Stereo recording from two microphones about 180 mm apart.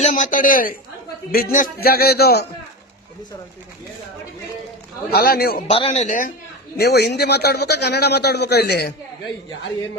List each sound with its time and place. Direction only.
0.0 s a woman's voice: 45° left (ahead or behind); by 2.5 s 60° left (ahead or behind)
5.1 s a man's voice: 60° left (ahead or behind)
5.7 s speech: 35° left (ahead or behind)
6.7 s a man's voice: 60° left (ahead or behind)